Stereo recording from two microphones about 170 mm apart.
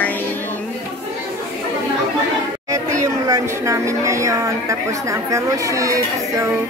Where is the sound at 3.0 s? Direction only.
20° right (ahead or behind).